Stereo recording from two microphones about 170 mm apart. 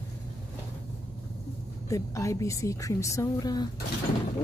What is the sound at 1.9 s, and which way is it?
A woman's voice, 15° left (ahead or behind).